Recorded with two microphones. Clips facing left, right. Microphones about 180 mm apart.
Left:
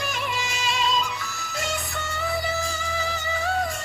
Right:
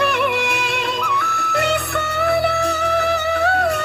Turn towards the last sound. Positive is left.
turn(degrees=-70)  # may be behind; listen again after turning